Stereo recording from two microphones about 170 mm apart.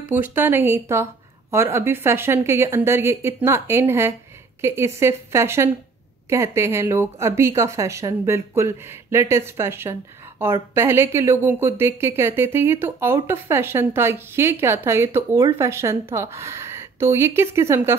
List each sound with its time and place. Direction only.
0.3 s speech: 10° right (ahead or behind)